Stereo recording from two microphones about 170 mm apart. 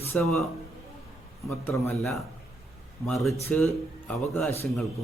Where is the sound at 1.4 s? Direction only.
15° left (ahead or behind).